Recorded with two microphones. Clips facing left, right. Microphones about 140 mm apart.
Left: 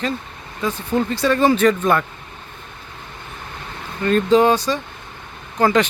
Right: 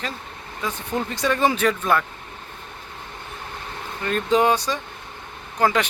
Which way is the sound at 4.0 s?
10° right (ahead or behind).